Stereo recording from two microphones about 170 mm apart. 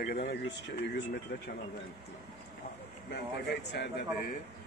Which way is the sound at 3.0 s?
90° left.